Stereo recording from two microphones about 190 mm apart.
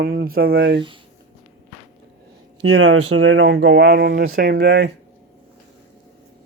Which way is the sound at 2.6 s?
90° right.